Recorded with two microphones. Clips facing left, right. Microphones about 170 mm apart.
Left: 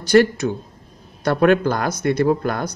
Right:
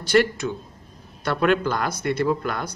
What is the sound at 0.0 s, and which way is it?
Speech, 40° left (ahead or behind).